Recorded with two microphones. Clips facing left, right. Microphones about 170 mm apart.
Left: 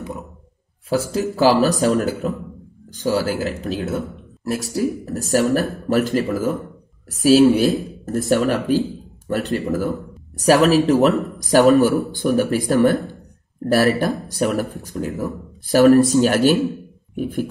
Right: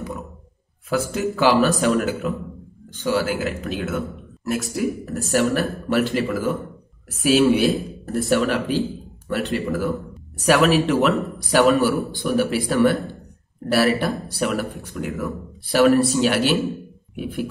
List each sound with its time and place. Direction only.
0.8 s speech: 35° left (ahead or behind)